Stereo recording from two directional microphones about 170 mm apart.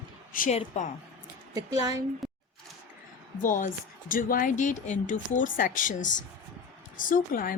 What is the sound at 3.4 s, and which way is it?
Speech, 50° left (ahead or behind).